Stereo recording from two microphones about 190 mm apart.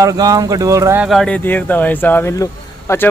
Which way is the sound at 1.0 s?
Centre (ahead or behind).